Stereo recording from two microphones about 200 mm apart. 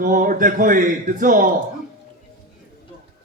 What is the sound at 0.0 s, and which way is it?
A man's voice, 45° right (ahead or behind).